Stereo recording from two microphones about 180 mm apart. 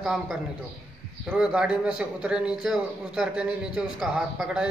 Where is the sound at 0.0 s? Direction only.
5° right (ahead or behind).